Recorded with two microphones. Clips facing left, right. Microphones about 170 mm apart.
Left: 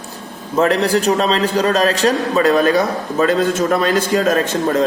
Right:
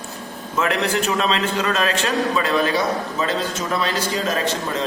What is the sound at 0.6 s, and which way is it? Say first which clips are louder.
A man's voice: left 6 dB; 35° left (ahead or behind).